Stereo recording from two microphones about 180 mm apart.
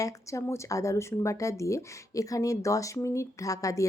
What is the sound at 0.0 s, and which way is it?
Speech, 15° left (ahead or behind).